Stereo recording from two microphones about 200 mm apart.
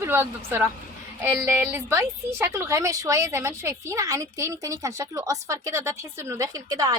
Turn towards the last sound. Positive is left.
turn(degrees=-20)  # may be behind; listen again after turning